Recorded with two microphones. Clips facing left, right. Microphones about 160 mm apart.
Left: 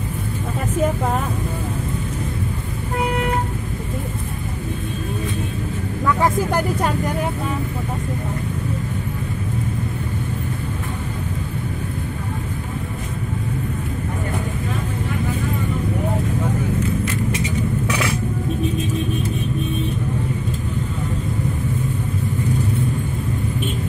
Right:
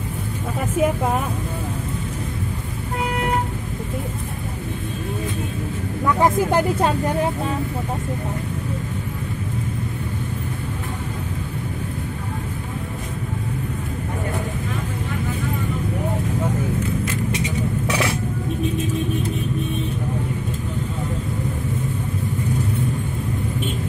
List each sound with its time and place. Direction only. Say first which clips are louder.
0.7 s speech: right 1 dB; 10° right (ahead or behind)
6.0 s speech: right 1 dB; 20° right (ahead or behind)